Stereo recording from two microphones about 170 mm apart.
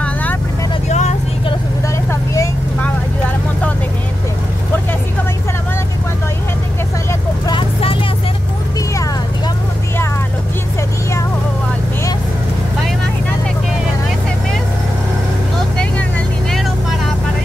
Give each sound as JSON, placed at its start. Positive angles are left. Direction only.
{"t": 0.0, "sound": "vehicle", "side_deg": 10}
{"t": 0.8, "sound": "vehicle", "side_deg": 40}
{"t": 2.0, "sound": "vehicle", "side_deg": 15}
{"t": 7.1, "sound": "vehicle", "side_deg": 25}